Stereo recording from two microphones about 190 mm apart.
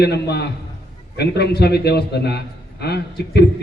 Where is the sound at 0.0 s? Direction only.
60° left (ahead or behind).